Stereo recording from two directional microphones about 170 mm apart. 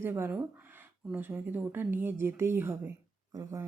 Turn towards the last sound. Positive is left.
turn(degrees=-20)  # may be behind; listen again after turning